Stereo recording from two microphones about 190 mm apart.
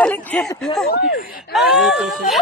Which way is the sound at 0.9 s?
60° left (ahead or behind).